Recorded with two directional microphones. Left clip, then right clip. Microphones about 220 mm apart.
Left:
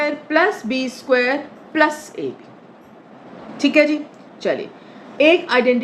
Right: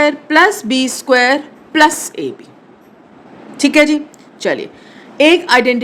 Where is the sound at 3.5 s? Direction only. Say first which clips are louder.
Right 4 dB; 50° right (ahead or behind).